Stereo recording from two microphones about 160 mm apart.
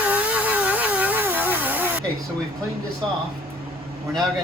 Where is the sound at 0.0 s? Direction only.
10° right (ahead or behind).